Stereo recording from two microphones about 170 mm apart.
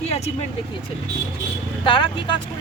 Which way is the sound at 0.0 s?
35° left (ahead or behind).